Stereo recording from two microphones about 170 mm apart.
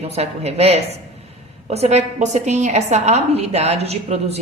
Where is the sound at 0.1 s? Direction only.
40° right (ahead or behind).